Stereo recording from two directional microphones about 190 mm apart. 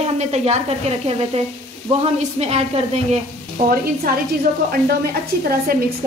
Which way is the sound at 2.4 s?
35° right (ahead or behind).